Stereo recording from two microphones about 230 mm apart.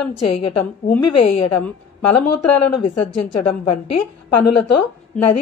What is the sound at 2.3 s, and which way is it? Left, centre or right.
A woman's voice, left.